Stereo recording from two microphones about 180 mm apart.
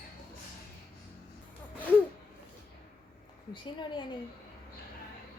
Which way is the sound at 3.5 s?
25° left (ahead or behind).